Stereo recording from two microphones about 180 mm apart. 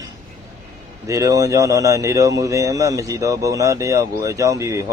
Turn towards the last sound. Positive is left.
turn(degrees=-15)  # may be behind; listen again after turning